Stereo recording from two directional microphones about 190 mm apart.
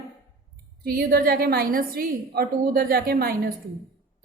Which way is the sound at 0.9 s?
50° right (ahead or behind).